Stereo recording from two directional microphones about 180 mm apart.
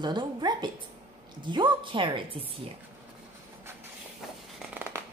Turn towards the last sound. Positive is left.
turn(degrees=-10)  # may be behind; listen again after turning